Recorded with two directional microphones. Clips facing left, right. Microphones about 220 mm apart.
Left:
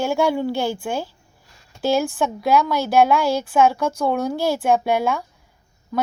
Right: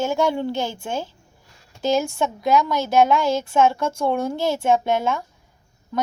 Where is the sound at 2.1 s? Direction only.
5° left (ahead or behind).